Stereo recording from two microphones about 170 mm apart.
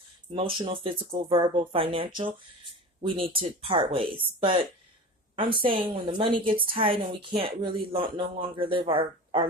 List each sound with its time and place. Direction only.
0.6 s a woman's voice: 30° right (ahead or behind)
5.4 s a woman's voice: 30° right (ahead or behind)